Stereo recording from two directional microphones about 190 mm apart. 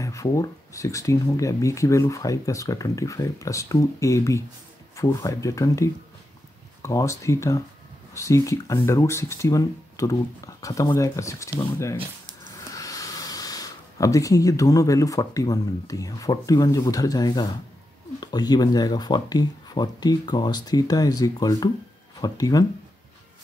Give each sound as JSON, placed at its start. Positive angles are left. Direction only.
{"t": 0.0, "sound": "speech", "side_deg": 15}